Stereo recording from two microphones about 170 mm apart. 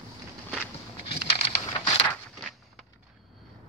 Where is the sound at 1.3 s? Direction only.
30° left (ahead or behind).